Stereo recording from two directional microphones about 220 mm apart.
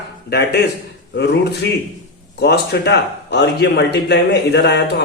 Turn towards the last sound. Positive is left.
turn(degrees=50)  # may be behind; listen again after turning